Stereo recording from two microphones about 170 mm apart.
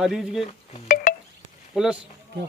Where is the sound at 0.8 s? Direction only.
50° left (ahead or behind).